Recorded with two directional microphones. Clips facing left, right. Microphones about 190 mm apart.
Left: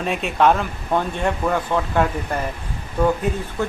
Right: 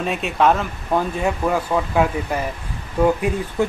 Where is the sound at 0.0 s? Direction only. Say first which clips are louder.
Even; centre (ahead or behind).